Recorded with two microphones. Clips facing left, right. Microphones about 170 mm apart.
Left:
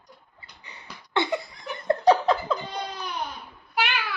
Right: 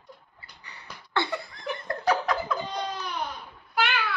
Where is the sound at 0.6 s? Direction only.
20° left (ahead or behind).